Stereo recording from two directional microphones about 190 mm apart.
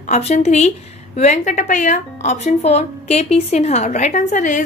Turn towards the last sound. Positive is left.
turn(degrees=40)  # may be behind; listen again after turning